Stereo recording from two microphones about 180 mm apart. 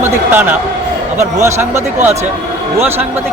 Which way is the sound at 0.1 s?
10° right (ahead or behind).